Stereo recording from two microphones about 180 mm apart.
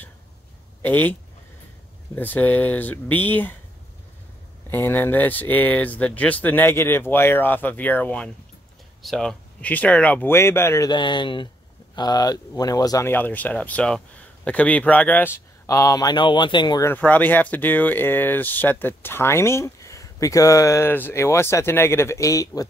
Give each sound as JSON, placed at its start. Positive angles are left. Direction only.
{"t": 0.8, "sound": "speech", "side_deg": 10}
{"t": 2.1, "sound": "speech", "side_deg": 10}
{"t": 4.6, "sound": "speech", "side_deg": 10}
{"t": 16.9, "sound": "speech", "side_deg": 10}